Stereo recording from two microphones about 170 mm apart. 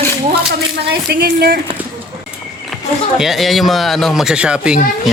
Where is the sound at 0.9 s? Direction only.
70° right (ahead or behind).